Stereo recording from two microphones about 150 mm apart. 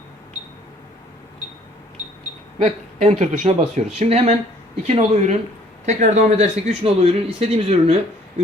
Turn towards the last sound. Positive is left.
turn(degrees=-40)  # may be behind; listen again after turning